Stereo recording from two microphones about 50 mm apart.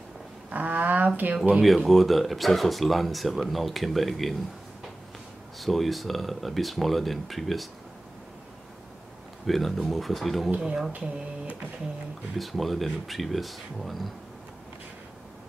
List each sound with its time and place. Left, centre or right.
0.5 s speech: right
1.9 s speech: centre
5.6 s speech: centre
9.5 s speech: centre
10.9 s speech: right
12.4 s speech: centre